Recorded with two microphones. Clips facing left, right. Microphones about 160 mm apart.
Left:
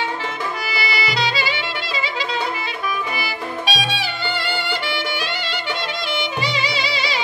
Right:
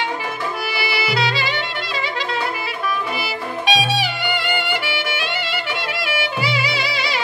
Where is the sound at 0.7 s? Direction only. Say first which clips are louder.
Right 3 dB; centre (ahead or behind).